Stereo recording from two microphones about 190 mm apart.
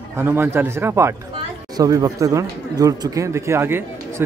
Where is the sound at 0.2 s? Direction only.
10° right (ahead or behind).